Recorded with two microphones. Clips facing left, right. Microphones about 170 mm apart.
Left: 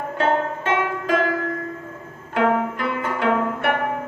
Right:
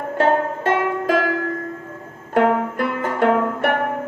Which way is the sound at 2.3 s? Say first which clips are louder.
Right 3 dB; 45° right (ahead or behind).